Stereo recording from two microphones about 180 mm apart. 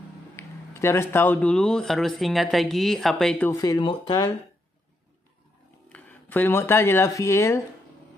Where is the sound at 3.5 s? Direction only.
20° left (ahead or behind).